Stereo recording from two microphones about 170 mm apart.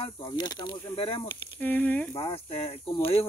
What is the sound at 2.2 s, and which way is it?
Speech, 30° left (ahead or behind).